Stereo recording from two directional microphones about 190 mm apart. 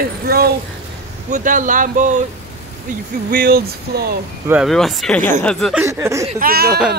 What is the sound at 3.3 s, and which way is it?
Speech, 50° right (ahead or behind).